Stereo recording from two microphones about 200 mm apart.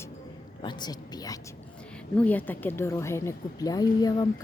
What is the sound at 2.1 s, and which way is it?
A woman's voice, 10° left (ahead or behind).